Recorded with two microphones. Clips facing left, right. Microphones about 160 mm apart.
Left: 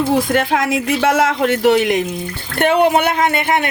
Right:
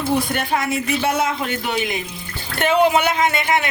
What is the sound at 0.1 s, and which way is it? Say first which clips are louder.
Speech: left 5 dB; 90° left.